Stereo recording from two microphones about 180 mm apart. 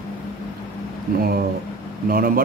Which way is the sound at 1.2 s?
55° right (ahead or behind).